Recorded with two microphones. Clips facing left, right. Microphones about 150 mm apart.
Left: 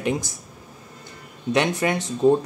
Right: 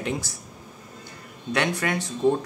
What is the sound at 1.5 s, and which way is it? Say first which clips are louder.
Speech: left 4 dB; 20° left (ahead or behind).